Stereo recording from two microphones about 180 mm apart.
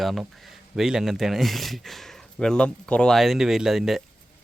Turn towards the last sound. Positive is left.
turn(degrees=0)  # may be behind; listen again after turning